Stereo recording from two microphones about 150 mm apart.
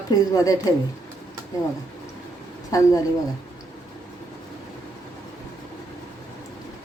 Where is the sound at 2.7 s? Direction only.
25° left (ahead or behind).